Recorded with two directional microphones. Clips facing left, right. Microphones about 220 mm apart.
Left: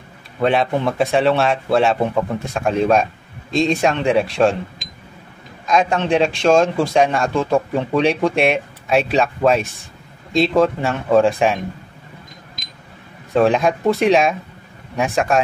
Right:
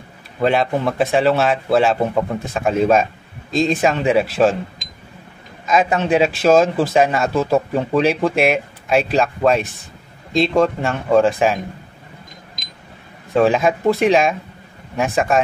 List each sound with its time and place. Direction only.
0.4 s a man's voice: centre (ahead or behind)
5.7 s a man's voice: 5° right (ahead or behind)
13.3 s a man's voice: centre (ahead or behind)